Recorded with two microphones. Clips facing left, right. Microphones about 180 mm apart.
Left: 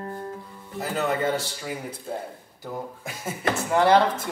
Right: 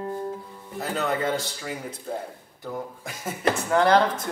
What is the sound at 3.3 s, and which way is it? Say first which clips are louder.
Speech: right 2 dB; 5° left (ahead or behind).